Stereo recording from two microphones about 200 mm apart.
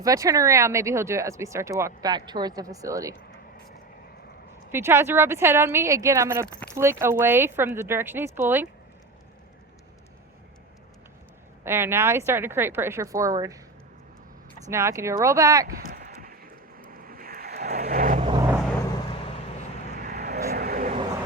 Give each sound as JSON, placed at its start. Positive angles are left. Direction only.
{"t": 0.0, "sound": "speech", "side_deg": -15}
{"t": 4.7, "sound": "speech", "side_deg": -10}
{"t": 11.6, "sound": "speech", "side_deg": -10}
{"t": 14.7, "sound": "speech", "side_deg": -15}
{"t": 15.6, "sound": "a sound", "side_deg": -45}
{"t": 16.9, "sound": "vehicle", "side_deg": -45}
{"t": 18.9, "sound": "vehicle", "side_deg": 20}
{"t": 20.0, "sound": "vehicle", "side_deg": -45}